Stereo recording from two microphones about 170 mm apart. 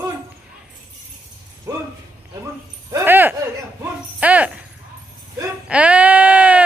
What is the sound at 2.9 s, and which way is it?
A woman's voice, 10° right (ahead or behind).